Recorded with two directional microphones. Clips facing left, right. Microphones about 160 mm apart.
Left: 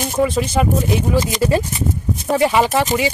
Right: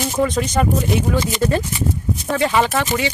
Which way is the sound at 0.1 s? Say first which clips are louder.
Left 3 dB; 5° left (ahead or behind).